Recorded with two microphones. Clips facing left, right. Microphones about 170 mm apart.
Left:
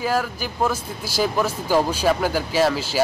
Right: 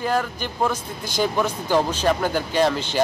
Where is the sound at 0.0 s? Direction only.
5° left (ahead or behind).